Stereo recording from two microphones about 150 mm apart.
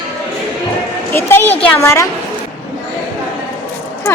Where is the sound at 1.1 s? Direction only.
15° left (ahead or behind).